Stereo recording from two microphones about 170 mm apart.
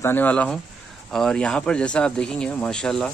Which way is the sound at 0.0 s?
10° left (ahead or behind).